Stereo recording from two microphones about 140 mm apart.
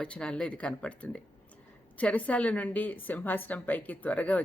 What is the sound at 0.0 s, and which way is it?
Speech, 5° left (ahead or behind).